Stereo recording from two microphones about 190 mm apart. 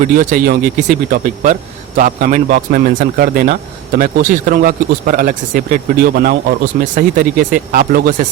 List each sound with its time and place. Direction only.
0.0 s a man's voice: 45° right (ahead or behind)